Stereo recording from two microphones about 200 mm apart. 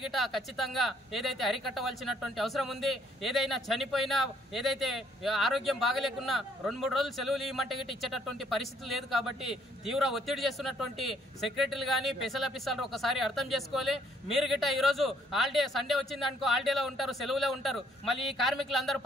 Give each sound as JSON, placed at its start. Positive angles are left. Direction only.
{"t": 0.0, "sound": "speech", "side_deg": 0}